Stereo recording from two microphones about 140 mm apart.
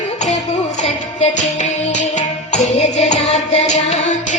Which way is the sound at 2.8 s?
55° left (ahead or behind).